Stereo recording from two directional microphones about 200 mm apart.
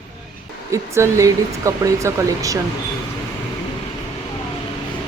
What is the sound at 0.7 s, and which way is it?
Speech, 15° right (ahead or behind).